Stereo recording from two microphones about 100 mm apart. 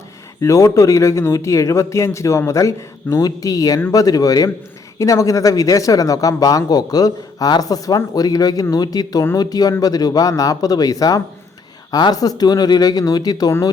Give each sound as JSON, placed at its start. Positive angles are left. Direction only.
{"t": 0.4, "sound": "speech", "side_deg": 30}